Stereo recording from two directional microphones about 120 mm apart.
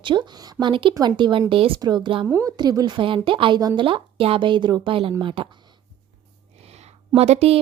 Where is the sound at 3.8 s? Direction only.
50° right (ahead or behind).